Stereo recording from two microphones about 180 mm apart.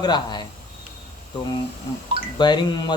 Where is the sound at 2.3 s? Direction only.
25° left (ahead or behind).